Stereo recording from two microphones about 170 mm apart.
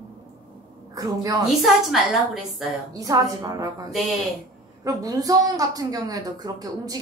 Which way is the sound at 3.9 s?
Centre (ahead or behind).